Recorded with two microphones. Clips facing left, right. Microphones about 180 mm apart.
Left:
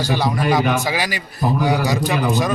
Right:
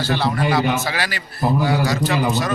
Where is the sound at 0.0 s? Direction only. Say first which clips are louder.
Left 1 dB; 15° left (ahead or behind).